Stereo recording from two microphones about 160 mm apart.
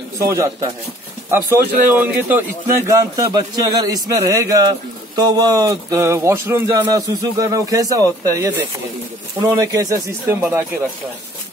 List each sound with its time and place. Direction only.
0.3 s speech: 20° right (ahead or behind)
3.0 s a man's voice: 25° right (ahead or behind)